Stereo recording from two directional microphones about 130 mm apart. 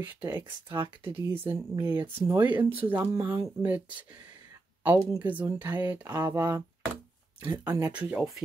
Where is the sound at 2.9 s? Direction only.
25° right (ahead or behind).